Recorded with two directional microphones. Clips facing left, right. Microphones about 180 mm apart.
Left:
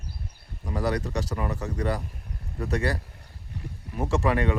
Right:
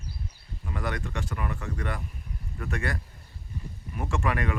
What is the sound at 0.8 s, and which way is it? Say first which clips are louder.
Speech: left 6 dB; 35° left (ahead or behind).